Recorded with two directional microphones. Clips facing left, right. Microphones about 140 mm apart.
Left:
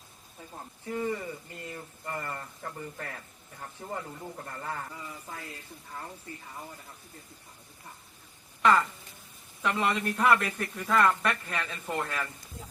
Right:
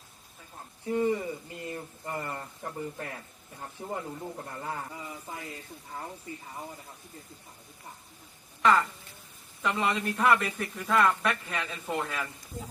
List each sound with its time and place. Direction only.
0.9 s speech: 20° right (ahead or behind)
8.6 s a man's voice: centre (ahead or behind)